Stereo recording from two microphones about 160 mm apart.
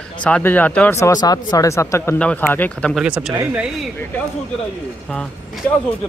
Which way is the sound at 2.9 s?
5° right (ahead or behind).